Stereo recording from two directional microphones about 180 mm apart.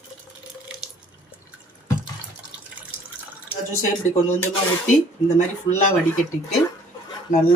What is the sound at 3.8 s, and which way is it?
Speech, 40° left (ahead or behind).